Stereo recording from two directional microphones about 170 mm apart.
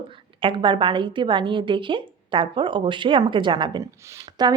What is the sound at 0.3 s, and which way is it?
A woman's voice, 30° right (ahead or behind).